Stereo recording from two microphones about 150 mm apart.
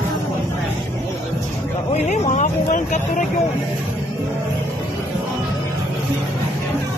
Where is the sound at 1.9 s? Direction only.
50° left (ahead or behind).